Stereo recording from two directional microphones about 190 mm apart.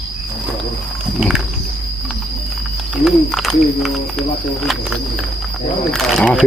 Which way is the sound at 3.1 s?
Centre (ahead or behind).